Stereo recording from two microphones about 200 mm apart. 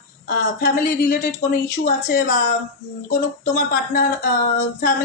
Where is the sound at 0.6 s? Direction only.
50° left (ahead or behind).